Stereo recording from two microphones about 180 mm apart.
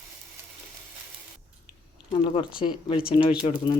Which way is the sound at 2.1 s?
30° left (ahead or behind).